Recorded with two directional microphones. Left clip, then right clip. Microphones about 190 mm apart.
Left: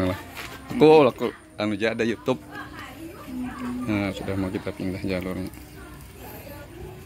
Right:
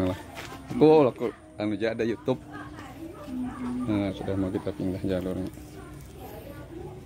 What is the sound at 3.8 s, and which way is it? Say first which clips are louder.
Speech: left 2 dB; 5° right (ahead or behind).